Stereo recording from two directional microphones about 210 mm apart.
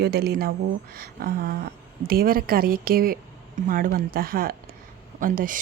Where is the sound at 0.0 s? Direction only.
50° right (ahead or behind).